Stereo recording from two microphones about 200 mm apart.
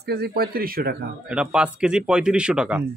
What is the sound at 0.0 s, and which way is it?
Speech, 50° right (ahead or behind).